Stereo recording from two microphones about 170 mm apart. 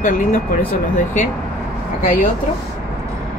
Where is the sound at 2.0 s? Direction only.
55° left (ahead or behind).